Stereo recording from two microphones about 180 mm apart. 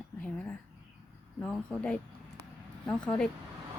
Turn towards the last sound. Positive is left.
turn(degrees=5)  # may be behind; listen again after turning